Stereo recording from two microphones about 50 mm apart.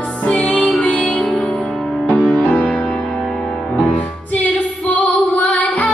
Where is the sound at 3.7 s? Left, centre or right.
Left.